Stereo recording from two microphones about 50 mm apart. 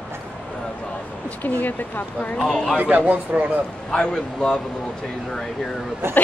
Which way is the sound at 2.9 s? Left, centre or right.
Right.